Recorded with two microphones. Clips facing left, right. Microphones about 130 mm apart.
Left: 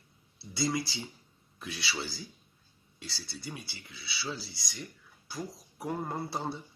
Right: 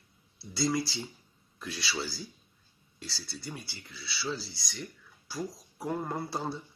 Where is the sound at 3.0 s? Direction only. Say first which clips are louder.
Right 1 dB; 20° left (ahead or behind).